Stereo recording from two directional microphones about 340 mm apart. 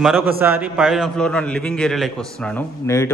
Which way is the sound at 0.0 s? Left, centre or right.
Centre.